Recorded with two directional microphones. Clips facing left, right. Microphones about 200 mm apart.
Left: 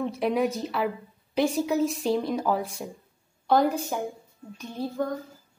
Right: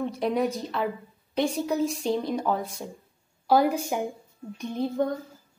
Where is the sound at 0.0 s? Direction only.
Centre (ahead or behind).